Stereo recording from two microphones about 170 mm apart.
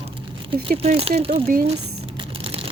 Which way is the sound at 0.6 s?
40° right (ahead or behind).